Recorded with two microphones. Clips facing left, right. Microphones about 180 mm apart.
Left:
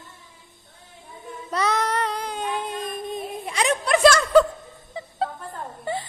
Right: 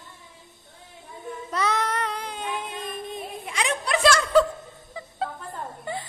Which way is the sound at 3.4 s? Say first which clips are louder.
Left 4 dB; 40° left (ahead or behind).